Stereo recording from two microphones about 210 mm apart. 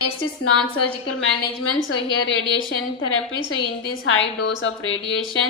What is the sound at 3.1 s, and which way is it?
Speech, 90° left.